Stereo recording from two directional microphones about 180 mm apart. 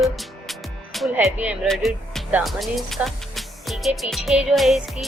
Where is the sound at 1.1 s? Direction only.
10° right (ahead or behind).